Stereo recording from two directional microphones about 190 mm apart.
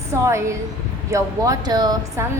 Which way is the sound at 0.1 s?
15° right (ahead or behind).